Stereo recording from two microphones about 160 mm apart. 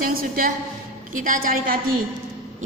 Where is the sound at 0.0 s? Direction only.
65° right (ahead or behind).